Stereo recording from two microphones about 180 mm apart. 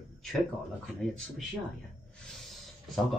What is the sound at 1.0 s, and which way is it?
Speech, 5° left (ahead or behind).